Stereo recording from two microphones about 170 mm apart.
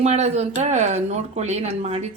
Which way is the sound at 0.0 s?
40° right (ahead or behind).